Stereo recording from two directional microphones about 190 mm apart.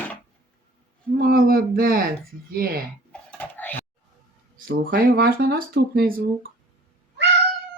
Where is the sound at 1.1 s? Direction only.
50° right (ahead or behind).